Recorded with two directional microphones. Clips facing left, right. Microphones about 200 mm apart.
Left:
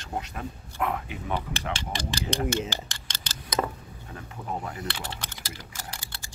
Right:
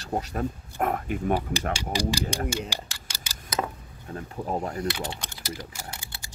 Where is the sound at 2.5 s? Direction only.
10° right (ahead or behind).